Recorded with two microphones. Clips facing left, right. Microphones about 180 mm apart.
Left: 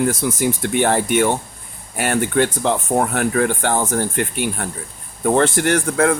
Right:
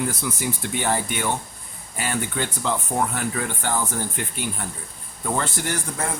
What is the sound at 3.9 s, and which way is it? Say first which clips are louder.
Speech: left 8 dB; 65° left (ahead or behind).